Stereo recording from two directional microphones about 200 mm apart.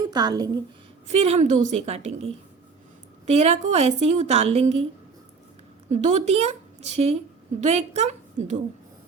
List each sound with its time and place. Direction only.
0.0 s speech: 20° right (ahead or behind)
1.0 s a woman's voice: 30° right (ahead or behind)
5.9 s a woman's voice: 35° right (ahead or behind)